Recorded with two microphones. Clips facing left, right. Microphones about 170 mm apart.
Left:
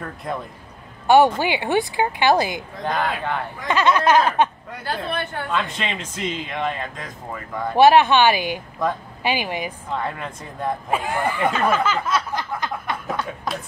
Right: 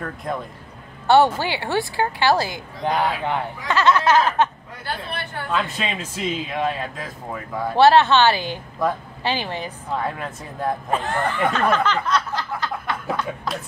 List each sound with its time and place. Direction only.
0.0 s speech: centre (ahead or behind)
1.0 s a woman's voice: 15° left (ahead or behind)
2.8 s speech: 15° right (ahead or behind)
3.6 s a woman's voice: 15° left (ahead or behind)
5.5 s speech: 5° right (ahead or behind)
7.7 s a woman's voice: 15° left (ahead or behind)
8.8 s speech: 5° right (ahead or behind)
9.2 s a woman's voice: 10° left (ahead or behind)
9.8 s speech: 5° right (ahead or behind)
10.9 s a sound: 10° left (ahead or behind)